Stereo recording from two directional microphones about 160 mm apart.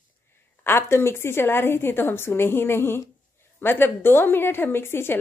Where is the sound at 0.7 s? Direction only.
15° left (ahead or behind).